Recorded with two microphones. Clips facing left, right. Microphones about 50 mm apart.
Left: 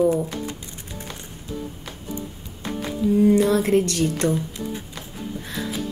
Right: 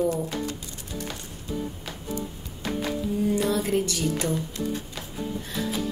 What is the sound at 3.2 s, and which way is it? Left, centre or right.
A woman's voice, left.